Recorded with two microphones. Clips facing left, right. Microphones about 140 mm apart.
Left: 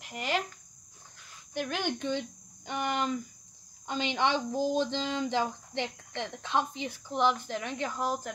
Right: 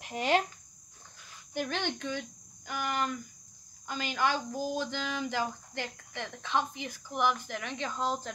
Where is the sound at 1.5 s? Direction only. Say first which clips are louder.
Even; centre (ahead or behind).